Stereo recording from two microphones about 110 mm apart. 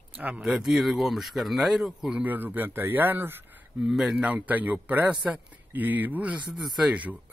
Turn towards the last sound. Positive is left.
turn(degrees=-10)  # may be behind; listen again after turning